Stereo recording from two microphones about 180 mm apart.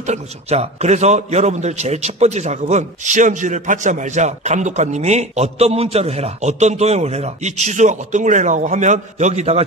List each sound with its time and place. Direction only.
0.0 s a man's voice: 40° right (ahead or behind)